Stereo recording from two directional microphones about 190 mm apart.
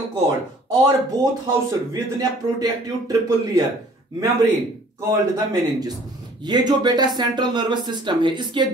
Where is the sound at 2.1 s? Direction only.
20° right (ahead or behind).